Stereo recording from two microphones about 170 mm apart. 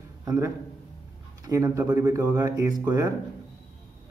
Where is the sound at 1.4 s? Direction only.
20° right (ahead or behind).